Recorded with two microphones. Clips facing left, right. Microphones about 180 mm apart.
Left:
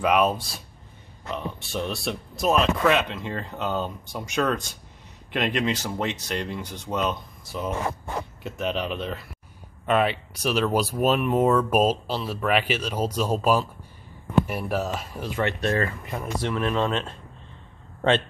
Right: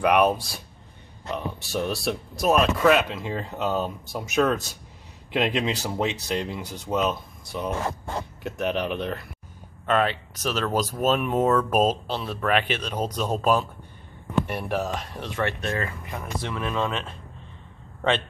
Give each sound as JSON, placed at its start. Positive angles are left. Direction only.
{"t": 0.0, "sound": "speech", "side_deg": 0}
{"t": 15.6, "sound": "speech", "side_deg": 35}
{"t": 16.7, "sound": "speech", "side_deg": 20}